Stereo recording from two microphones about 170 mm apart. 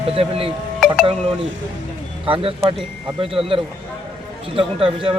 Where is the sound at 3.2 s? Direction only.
35° right (ahead or behind).